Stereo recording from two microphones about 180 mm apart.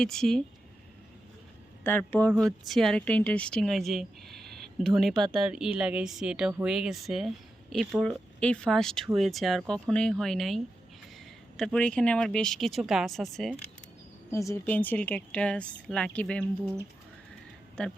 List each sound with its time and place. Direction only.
0.0 s speech: 5° left (ahead or behind)
1.8 s speech: 10° left (ahead or behind)
14.3 s speech: 15° left (ahead or behind)
17.8 s speech: 5° left (ahead or behind)